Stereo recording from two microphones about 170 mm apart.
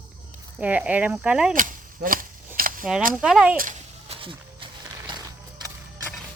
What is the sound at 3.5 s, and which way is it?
Speech, 55° right (ahead or behind).